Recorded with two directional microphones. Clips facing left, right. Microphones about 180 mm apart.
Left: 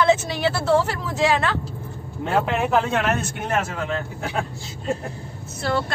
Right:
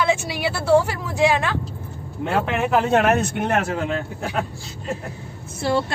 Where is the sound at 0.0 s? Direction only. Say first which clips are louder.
Left 3 dB; 10° right (ahead or behind).